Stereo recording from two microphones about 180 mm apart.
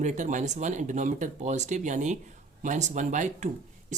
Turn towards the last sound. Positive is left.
turn(degrees=-40)  # may be behind; listen again after turning